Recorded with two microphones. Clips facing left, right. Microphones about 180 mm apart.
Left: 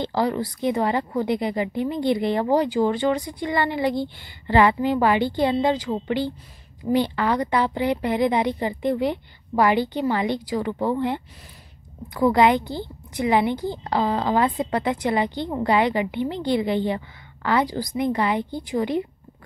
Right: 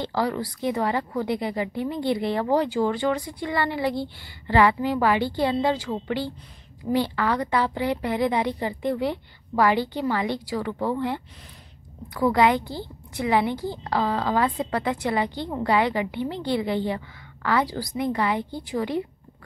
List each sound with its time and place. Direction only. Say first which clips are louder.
0.0 s a woman's voice: left 3 dB; 20° left (ahead or behind)